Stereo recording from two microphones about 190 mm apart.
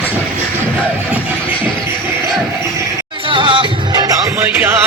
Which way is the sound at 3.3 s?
25° right (ahead or behind).